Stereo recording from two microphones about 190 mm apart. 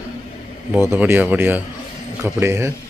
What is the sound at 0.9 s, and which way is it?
Speech, 10° right (ahead or behind).